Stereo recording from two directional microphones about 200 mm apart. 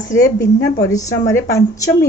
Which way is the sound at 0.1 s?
15° left (ahead or behind).